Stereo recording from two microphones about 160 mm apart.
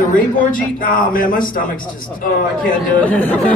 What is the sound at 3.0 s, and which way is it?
Speech, 10° left (ahead or behind).